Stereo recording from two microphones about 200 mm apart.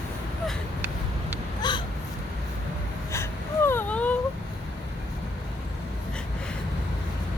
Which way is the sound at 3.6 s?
10° left (ahead or behind).